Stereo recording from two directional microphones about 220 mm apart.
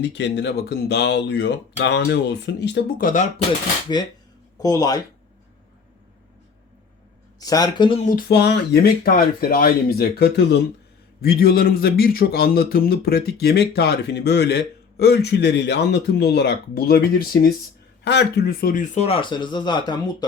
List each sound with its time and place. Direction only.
0.0 s speech: 50° left (ahead or behind)
4.6 s speech: 15° left (ahead or behind)
7.3 s speech: 15° left (ahead or behind)
8.0 s speech: 45° left (ahead or behind); by 20.2 s 20° left (ahead or behind)